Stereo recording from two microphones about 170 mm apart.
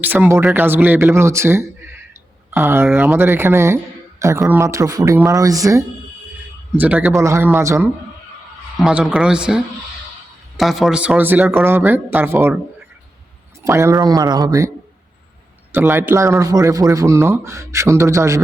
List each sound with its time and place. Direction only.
0.0 s speech: 10° right (ahead or behind)
6.7 s speech: 10° right (ahead or behind)
13.7 s speech: 15° right (ahead or behind)
15.7 s speech: 15° right (ahead or behind)